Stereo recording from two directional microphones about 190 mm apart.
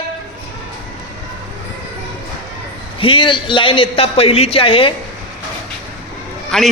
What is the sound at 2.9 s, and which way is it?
Speech, 25° left (ahead or behind).